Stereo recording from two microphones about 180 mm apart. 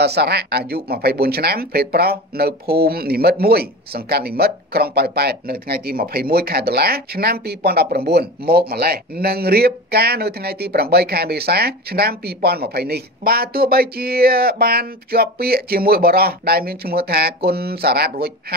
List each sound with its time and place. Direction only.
0.0 s speech: 65° right (ahead or behind)